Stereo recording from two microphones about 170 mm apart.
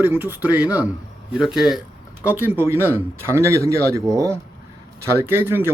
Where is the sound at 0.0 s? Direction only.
10° right (ahead or behind).